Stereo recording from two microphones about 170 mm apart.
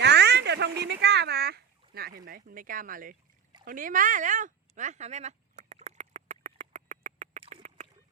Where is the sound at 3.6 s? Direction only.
55° right (ahead or behind).